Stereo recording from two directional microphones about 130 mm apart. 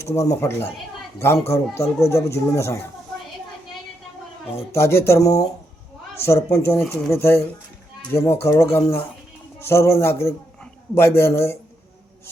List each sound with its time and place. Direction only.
0.0 s speech: 20° left (ahead or behind)
4.5 s speech: 20° left (ahead or behind)